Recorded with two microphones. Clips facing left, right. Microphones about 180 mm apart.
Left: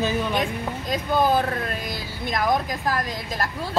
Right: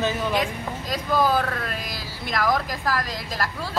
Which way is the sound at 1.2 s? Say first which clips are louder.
Left 1 dB; 20° left (ahead or behind).